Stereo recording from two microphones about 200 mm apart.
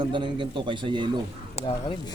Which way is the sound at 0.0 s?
25° right (ahead or behind).